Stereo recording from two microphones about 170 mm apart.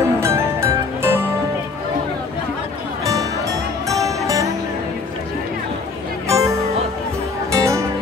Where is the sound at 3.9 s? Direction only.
20° right (ahead or behind).